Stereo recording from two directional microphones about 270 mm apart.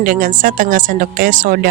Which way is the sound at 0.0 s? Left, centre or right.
Right.